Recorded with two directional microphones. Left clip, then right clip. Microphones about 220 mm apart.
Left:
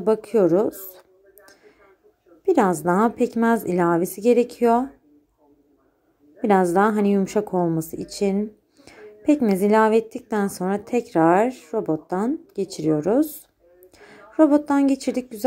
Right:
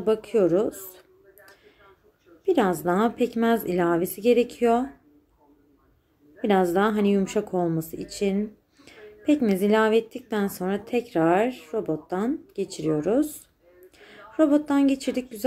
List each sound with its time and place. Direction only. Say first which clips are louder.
0.0 s a woman's voice: left 3 dB; 15° left (ahead or behind)
2.4 s a woman's voice: left 3 dB; 15° left (ahead or behind)
6.4 s a woman's voice: left 4 dB; 15° left (ahead or behind)